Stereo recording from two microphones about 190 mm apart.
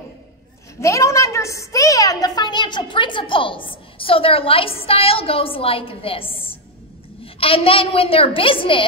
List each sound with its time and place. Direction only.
0.7 s a woman's voice: 15° left (ahead or behind)